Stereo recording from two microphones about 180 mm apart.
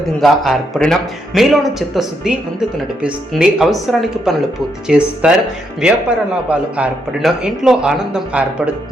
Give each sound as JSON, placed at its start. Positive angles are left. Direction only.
{"t": 0.2, "sound": "a man's voice", "side_deg": 0}